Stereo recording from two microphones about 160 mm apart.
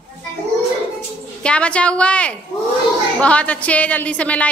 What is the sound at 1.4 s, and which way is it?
Speech, 5° left (ahead or behind).